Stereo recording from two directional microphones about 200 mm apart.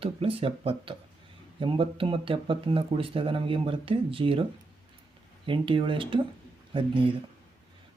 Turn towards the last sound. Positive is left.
turn(degrees=-25)  # may be behind; listen again after turning